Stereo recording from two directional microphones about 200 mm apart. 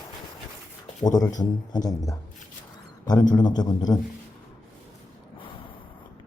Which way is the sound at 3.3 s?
20° left (ahead or behind).